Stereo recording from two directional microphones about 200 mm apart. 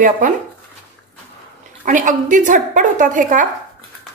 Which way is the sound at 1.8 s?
40° right (ahead or behind).